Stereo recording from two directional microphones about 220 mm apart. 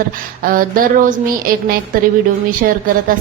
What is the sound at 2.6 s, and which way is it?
Speech, 45° right (ahead or behind).